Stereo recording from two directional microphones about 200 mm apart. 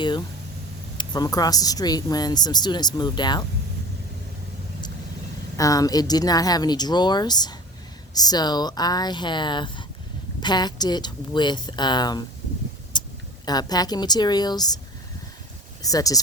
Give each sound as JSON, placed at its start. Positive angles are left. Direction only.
{"t": 0.0, "sound": "speech", "side_deg": 20}
{"t": 5.5, "sound": "speech", "side_deg": 15}
{"t": 12.9, "sound": "a sound", "side_deg": 20}
{"t": 13.4, "sound": "speech", "side_deg": 20}
{"t": 15.8, "sound": "speech", "side_deg": 15}